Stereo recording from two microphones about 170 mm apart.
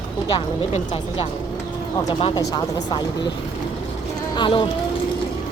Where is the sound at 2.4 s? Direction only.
20° left (ahead or behind).